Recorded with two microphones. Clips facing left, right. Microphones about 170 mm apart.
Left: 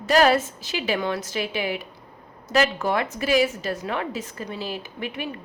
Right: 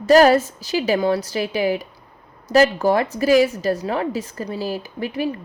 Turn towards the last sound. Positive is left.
turn(degrees=-35)  # may be behind; listen again after turning